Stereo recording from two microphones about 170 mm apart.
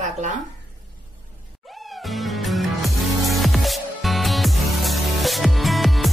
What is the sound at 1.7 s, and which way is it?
Music, centre (ahead or behind).